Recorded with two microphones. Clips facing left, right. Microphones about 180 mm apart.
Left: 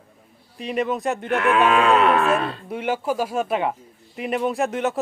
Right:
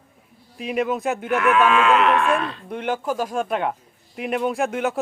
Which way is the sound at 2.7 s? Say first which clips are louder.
Even; 5° left (ahead or behind).